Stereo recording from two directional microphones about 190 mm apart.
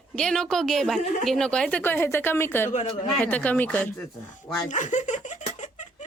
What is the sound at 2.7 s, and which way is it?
Speech, 40° left (ahead or behind).